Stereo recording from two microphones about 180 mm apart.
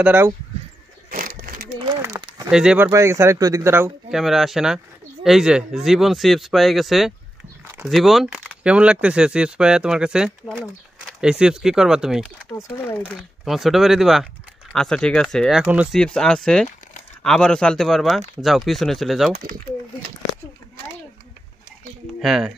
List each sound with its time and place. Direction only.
0.0 s speech: 10° right (ahead or behind)
1.1 s a sound: 50° right (ahead or behind)
1.9 s a sound: 20° right (ahead or behind)
2.5 s speech: 5° right (ahead or behind)
2.9 s speech: 15° right (ahead or behind)
4.1 s speech: centre (ahead or behind)
12.5 s speech: 10° left (ahead or behind)
22.2 s speech: centre (ahead or behind)